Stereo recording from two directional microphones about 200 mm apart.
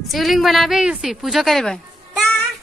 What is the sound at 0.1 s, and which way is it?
Speech, centre (ahead or behind).